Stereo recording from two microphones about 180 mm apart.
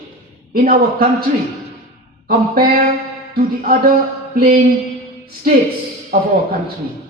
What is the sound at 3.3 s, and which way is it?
A man's voice, 55° right (ahead or behind).